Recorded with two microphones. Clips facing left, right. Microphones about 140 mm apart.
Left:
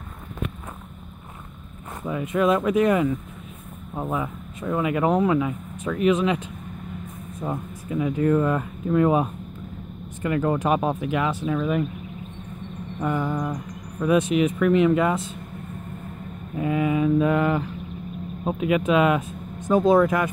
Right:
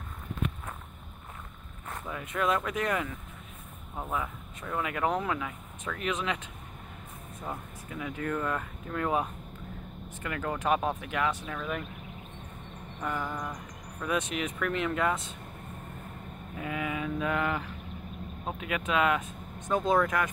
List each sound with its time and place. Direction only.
2.0 s speech: 15° left (ahead or behind)
7.4 s speech: 25° left (ahead or behind)
13.0 s speech: 20° left (ahead or behind)
14.1 s speech: 5° left (ahead or behind)
16.5 s speech: 30° left (ahead or behind)